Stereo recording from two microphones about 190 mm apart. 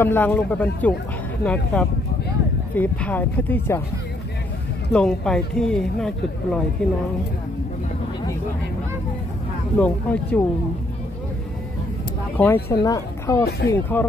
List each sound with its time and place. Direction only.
0.0 s speech: 10° left (ahead or behind)
4.9 s speech: 5° left (ahead or behind)
9.8 s speech: 10° left (ahead or behind)
12.4 s a woman's voice: 10° left (ahead or behind)